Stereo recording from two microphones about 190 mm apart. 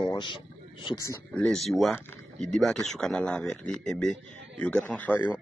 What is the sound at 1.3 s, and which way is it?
A man's voice, 5° left (ahead or behind).